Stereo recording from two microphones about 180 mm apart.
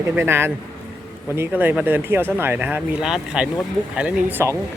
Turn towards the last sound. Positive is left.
turn(degrees=-10)  # may be behind; listen again after turning